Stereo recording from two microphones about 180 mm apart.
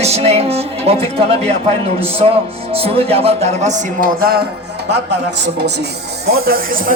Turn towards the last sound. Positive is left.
turn(degrees=-50)  # may be behind; listen again after turning